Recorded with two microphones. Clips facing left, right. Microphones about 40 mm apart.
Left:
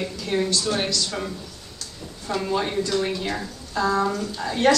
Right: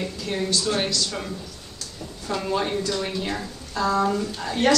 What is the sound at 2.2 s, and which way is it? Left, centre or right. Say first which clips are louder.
Speech: left 1 dB; centre.